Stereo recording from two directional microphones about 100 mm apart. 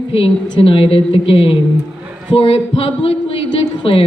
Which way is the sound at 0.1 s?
70° left (ahead or behind).